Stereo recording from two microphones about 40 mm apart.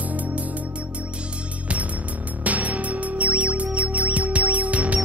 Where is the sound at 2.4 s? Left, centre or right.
Right.